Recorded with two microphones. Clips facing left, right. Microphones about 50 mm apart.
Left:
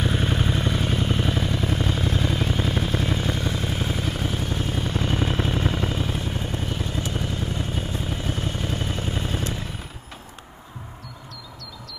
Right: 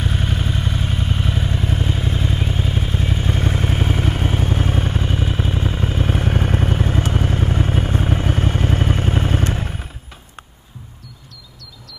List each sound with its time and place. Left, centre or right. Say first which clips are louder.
0.0 s vehicle: even; centre
0.6 s vehicle: even; centre
1.4 s vehicle: right 2 dB; right
3.3 s vehicle: right 5 dB; right
4.9 s vehicle: right 2 dB; centre
5.9 s vehicle: right 6 dB; right